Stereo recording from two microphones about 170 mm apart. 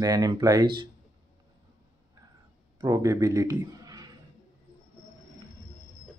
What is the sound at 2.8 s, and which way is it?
Speech, 20° right (ahead or behind).